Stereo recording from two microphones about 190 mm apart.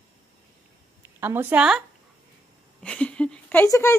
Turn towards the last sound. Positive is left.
turn(degrees=15)  # may be behind; listen again after turning